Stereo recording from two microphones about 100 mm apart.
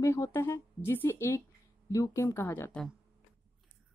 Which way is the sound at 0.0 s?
30° left (ahead or behind).